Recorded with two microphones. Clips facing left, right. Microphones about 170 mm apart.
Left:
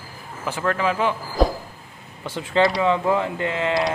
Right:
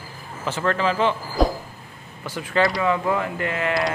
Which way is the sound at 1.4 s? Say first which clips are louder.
Left 1 dB; centre (ahead or behind).